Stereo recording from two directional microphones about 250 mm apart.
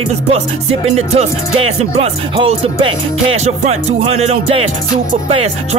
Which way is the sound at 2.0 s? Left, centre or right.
Right.